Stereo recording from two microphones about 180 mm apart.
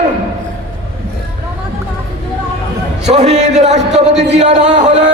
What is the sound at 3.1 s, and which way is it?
Speech, 35° right (ahead or behind).